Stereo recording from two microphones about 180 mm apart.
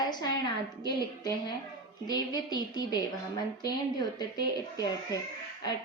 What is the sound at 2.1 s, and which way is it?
A woman's voice, 20° left (ahead or behind).